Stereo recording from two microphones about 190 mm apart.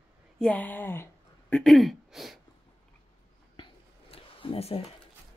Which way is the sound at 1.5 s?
Centre (ahead or behind).